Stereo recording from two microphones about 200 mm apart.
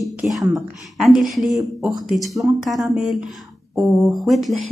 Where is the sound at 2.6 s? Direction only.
Centre (ahead or behind).